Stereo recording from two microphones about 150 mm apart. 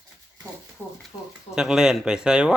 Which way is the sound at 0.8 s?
15° left (ahead or behind).